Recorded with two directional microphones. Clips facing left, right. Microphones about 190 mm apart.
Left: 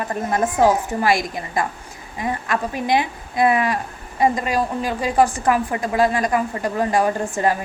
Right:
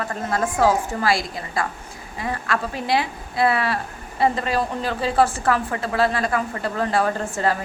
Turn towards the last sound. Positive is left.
turn(degrees=15)  # may be behind; listen again after turning